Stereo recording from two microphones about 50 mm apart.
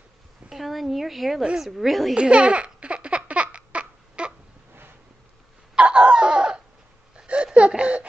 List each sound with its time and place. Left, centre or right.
0.5 s a woman's voice: centre
2.1 s laughter: centre
5.8 s a sound: centre
7.2 s laughter: centre